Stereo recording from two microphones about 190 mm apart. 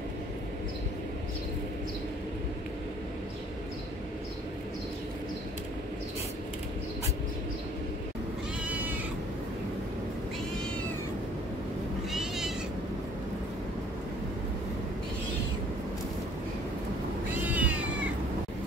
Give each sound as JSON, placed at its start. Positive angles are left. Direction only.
{"t": 8.6, "sound": "cat", "side_deg": -10}
{"t": 12.1, "sound": "cat", "side_deg": 0}
{"t": 17.3, "sound": "cat", "side_deg": -10}